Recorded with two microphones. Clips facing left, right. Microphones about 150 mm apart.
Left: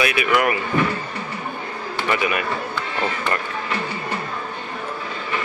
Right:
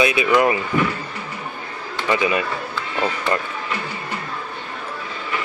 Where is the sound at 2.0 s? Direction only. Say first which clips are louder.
Right 3 dB; 25° right (ahead or behind).